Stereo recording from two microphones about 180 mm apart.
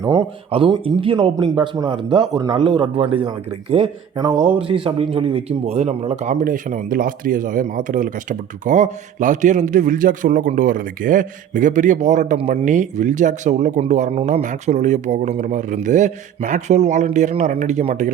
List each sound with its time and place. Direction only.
0.0 s speech: 20° right (ahead or behind)
0.5 s a man's voice: 30° right (ahead or behind)
6.4 s speech: 50° right (ahead or behind)